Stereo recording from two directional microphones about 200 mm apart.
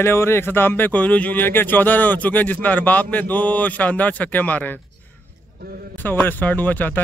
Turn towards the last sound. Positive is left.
turn(degrees=10)  # may be behind; listen again after turning